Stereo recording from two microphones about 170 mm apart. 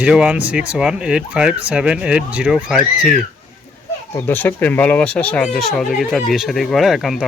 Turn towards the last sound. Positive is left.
turn(degrees=0)  # may be behind; listen again after turning